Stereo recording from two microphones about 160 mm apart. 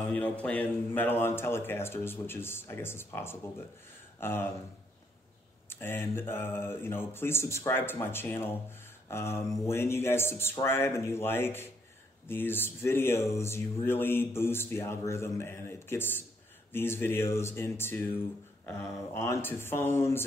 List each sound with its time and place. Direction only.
0.1 s speech: 10° left (ahead or behind)
5.7 s speech: 15° left (ahead or behind)